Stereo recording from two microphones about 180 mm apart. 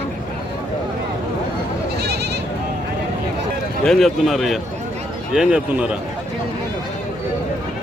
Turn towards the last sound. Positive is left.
turn(degrees=-5)  # may be behind; listen again after turning